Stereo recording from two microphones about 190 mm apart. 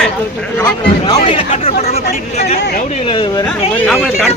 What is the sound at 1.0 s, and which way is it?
Speech, 25° left (ahead or behind).